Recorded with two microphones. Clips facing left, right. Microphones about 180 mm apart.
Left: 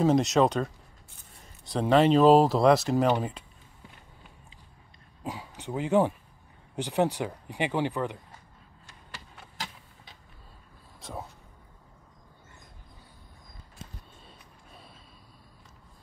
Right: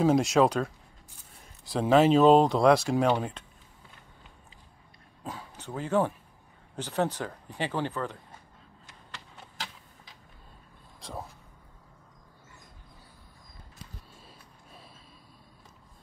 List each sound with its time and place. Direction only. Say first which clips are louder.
0.0 s speech: even; centre (ahead or behind)
5.2 s a sound: left 3 dB; 15° left (ahead or behind)
6.7 s speech: left 3 dB; 15° left (ahead or behind)
11.0 s vehicle: left 1 dB; centre (ahead or behind)
14.2 s music: even; centre (ahead or behind)